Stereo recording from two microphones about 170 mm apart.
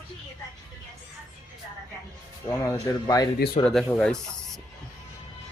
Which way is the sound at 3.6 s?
35° left (ahead or behind).